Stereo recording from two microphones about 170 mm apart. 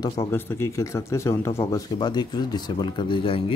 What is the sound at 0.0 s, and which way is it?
Speech, 20° left (ahead or behind).